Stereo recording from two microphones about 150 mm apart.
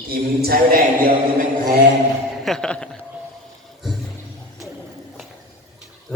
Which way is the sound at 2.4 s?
5° left (ahead or behind).